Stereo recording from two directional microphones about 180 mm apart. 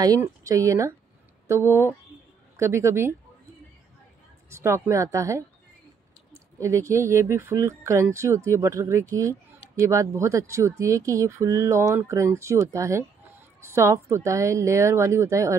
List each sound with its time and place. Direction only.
0.0 s speech: 20° right (ahead or behind)
4.5 s speech: 15° right (ahead or behind)
6.6 s speech: 15° right (ahead or behind)